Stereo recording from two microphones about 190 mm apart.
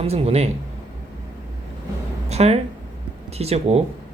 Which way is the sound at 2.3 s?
35° right (ahead or behind).